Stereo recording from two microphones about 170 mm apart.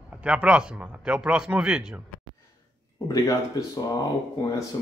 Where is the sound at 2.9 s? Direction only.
20° left (ahead or behind).